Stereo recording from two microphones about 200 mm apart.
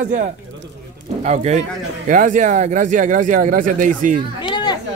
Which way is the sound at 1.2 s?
35° right (ahead or behind).